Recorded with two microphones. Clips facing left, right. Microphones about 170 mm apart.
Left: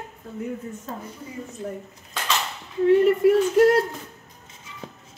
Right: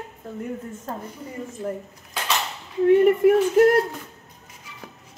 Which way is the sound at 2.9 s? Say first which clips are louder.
Right 1 dB; 55° right (ahead or behind).